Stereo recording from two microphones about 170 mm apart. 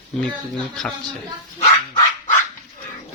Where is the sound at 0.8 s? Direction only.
5° left (ahead or behind).